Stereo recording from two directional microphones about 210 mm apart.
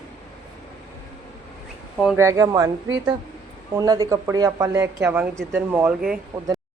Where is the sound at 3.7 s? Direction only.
15° right (ahead or behind).